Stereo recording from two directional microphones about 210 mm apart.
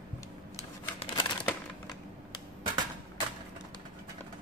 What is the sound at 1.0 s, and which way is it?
Crumpling, 25° left (ahead or behind).